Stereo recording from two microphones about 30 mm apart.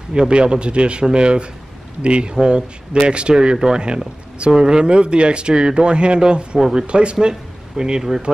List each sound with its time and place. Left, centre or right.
0.3 s speech: right
7.2 s speech: right